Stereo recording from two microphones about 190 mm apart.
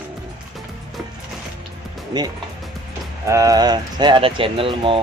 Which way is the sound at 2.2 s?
20° right (ahead or behind).